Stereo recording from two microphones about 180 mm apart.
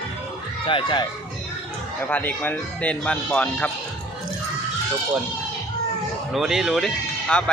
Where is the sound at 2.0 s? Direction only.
10° left (ahead or behind).